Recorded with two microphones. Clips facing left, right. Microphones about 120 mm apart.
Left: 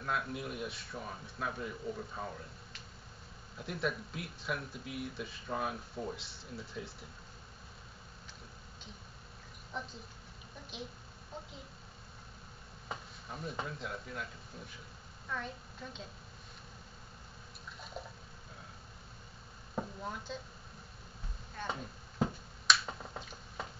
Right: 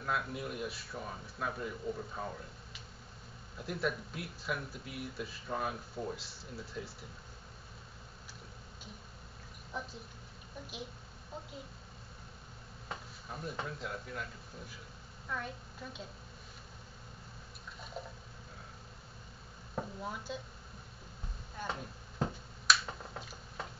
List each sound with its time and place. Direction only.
0.0 s speech: centre (ahead or behind)
9.7 s speech: 5° right (ahead or behind)
11.3 s speech: 5° right (ahead or behind)
12.8 s speech: centre (ahead or behind)
15.2 s a woman's voice: 5° right (ahead or behind)
19.7 s speech: 5° right (ahead or behind)
21.6 s speech: 10° right (ahead or behind)
22.2 s a sound: centre (ahead or behind)